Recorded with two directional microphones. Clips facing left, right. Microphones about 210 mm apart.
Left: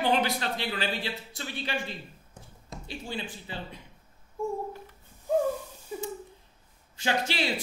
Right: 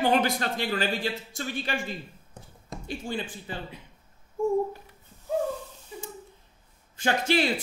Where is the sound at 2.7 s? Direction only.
50° right (ahead or behind).